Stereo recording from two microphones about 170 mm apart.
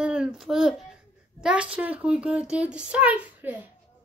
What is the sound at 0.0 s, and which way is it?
A child's voice, 5° right (ahead or behind).